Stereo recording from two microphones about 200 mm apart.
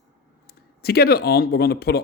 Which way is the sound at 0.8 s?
50° left (ahead or behind).